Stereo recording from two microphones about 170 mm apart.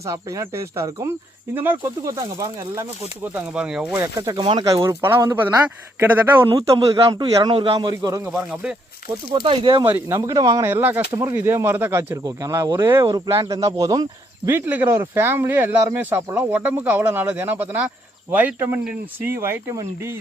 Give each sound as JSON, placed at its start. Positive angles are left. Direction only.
{"t": 0.0, "sound": "speech", "side_deg": -20}
{"t": 3.3, "sound": "speech", "side_deg": -5}
{"t": 4.0, "sound": "speech", "side_deg": -20}
{"t": 9.8, "sound": "speech", "side_deg": -15}